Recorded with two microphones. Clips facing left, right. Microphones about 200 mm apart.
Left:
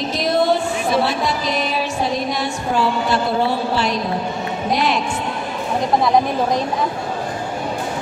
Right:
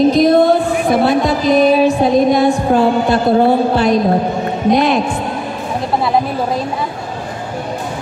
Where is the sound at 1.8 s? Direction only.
55° right (ahead or behind).